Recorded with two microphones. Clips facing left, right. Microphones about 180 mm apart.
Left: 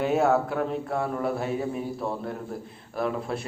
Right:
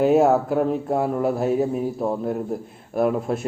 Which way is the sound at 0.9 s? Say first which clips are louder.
Right 6 dB; 40° right (ahead or behind).